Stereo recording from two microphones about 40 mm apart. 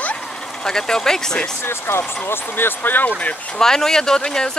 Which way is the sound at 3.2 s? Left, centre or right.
Left.